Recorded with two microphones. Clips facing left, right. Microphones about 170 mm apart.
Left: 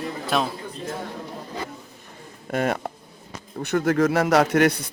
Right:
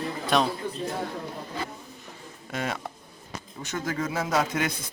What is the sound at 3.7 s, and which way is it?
A man's voice, 70° left (ahead or behind).